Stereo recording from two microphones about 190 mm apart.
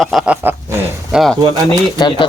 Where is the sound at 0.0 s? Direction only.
Centre (ahead or behind).